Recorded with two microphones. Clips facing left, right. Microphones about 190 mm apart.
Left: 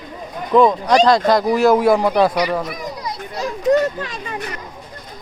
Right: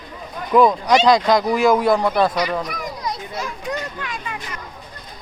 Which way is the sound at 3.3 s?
40° left (ahead or behind).